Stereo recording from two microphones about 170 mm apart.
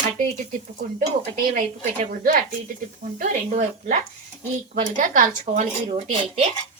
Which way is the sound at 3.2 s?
45° right (ahead or behind).